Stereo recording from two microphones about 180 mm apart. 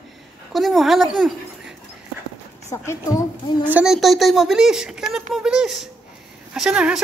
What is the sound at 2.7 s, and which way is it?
Speech, 15° left (ahead or behind).